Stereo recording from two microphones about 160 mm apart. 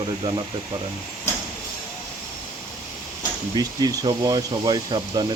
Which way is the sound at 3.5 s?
25° right (ahead or behind).